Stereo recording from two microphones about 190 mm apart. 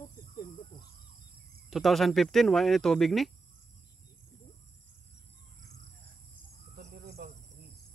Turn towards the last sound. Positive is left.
turn(degrees=-55)  # may be behind; listen again after turning